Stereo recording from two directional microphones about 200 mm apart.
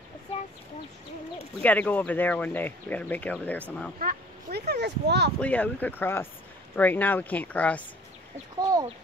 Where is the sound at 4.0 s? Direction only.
50° right (ahead or behind).